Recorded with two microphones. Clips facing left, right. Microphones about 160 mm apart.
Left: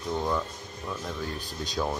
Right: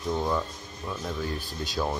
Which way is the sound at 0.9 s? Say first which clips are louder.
Right 2 dB; 5° right (ahead or behind).